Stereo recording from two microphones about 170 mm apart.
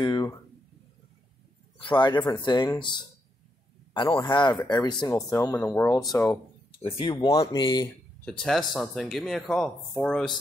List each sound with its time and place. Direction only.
0.0 s a sound: 25° left (ahead or behind)
1.8 s speech: 30° left (ahead or behind)
4.2 s speech: 25° left (ahead or behind)
7.0 s speech: 30° left (ahead or behind)
8.3 s speech: 5° left (ahead or behind)